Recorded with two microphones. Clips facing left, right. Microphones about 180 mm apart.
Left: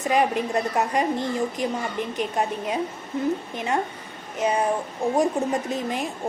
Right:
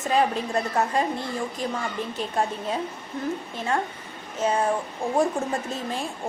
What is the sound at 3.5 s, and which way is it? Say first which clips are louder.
A woman's voice: left 1 dB; 20° left (ahead or behind).